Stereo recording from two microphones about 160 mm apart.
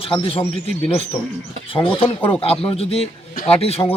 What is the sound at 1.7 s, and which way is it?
A man's voice, 35° left (ahead or behind).